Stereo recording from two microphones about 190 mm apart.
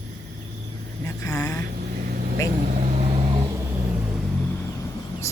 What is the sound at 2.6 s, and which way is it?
Vehicle, 40° right (ahead or behind).